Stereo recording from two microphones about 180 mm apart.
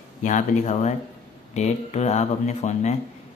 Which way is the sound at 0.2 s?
45° left (ahead or behind).